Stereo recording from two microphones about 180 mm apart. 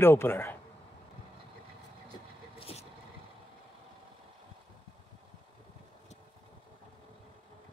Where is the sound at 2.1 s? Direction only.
30° left (ahead or behind).